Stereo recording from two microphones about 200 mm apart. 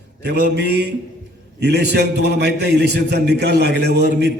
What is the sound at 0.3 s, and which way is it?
A man's voice, 55° right (ahead or behind).